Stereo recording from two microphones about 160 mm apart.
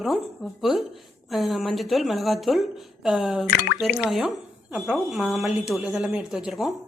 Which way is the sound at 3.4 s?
75° left (ahead or behind).